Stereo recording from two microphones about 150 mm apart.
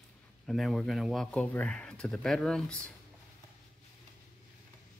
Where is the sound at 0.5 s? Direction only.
Centre (ahead or behind).